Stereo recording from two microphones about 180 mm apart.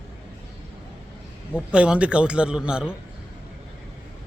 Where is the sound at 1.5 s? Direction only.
5° right (ahead or behind).